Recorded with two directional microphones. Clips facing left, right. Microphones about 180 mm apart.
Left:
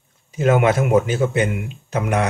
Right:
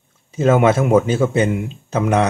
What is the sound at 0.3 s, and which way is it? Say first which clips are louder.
A man's voice: right 2 dB; 25° right (ahead or behind).